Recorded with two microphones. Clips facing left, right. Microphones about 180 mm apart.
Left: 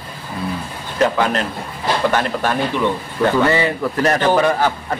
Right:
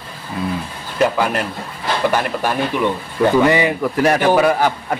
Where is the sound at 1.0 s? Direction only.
10° right (ahead or behind).